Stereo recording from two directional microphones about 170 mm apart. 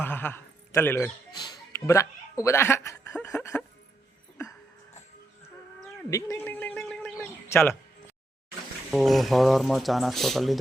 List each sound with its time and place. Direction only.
0.0 s speech: 10° left (ahead or behind)
1.3 s a sound: 25° left (ahead or behind)
2.4 s a woman's voice: 15° left (ahead or behind)
3.5 s music: 5° left (ahead or behind)
6.1 s a sound: 15° left (ahead or behind)
8.9 s speech: centre (ahead or behind)